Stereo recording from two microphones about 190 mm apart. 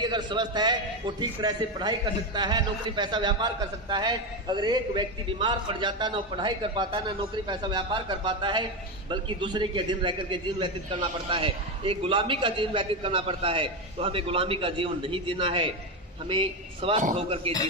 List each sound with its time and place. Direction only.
0.0 s a man's voice: 25° right (ahead or behind)